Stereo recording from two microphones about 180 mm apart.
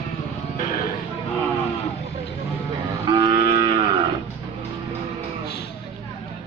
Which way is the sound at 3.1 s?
25° right (ahead or behind).